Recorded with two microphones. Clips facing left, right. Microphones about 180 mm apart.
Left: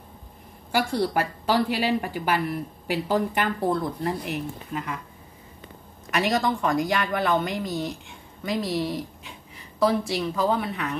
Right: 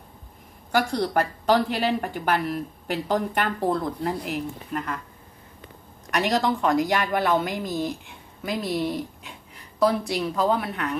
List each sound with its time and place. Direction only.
0.7 s speech: 5° left (ahead or behind)
6.0 s a woman's voice: centre (ahead or behind)